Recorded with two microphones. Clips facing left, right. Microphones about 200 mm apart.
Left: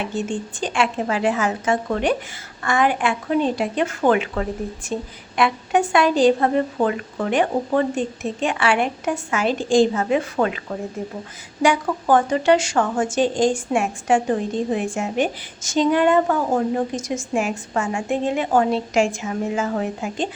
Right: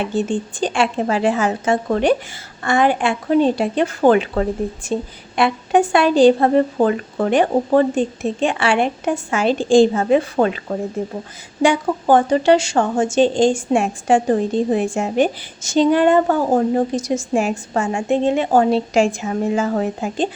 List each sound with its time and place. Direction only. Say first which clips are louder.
0.2 s a woman's voice: right 7 dB; 35° right (ahead or behind)
11.6 s a woman's voice: right 3 dB; 25° right (ahead or behind)